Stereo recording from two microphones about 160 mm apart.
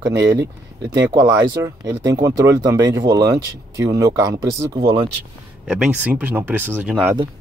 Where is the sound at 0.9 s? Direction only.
25° right (ahead or behind).